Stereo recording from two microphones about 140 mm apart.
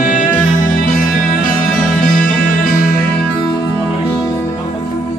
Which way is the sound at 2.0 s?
85° left.